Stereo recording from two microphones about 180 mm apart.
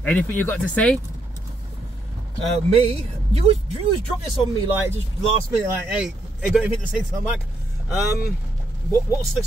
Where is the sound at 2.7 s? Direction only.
35° right (ahead or behind).